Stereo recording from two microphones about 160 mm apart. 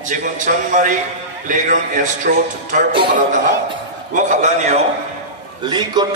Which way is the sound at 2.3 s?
65° right (ahead or behind).